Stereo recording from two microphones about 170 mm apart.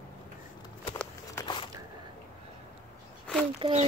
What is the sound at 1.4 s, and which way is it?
Biting, 25° left (ahead or behind).